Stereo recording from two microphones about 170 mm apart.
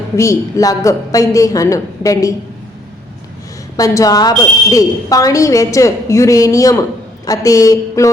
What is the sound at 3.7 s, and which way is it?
A woman's voice, 20° left (ahead or behind).